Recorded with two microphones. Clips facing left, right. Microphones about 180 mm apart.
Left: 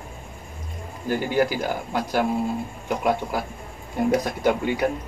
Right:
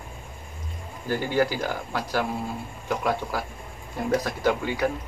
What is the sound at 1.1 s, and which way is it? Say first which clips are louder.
Speech: left 2 dB; 15° left (ahead or behind).